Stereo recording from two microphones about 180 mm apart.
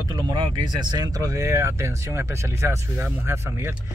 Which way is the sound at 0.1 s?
25° right (ahead or behind).